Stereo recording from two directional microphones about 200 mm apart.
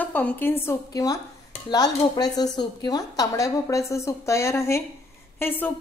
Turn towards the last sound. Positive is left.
turn(degrees=10)  # may be behind; listen again after turning